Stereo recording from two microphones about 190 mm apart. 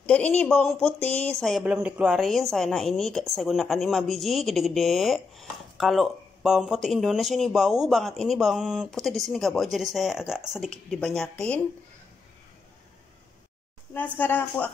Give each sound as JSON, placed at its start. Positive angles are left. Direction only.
{"t": 0.0, "sound": "speech", "side_deg": 5}
{"t": 13.9, "sound": "speech", "side_deg": 10}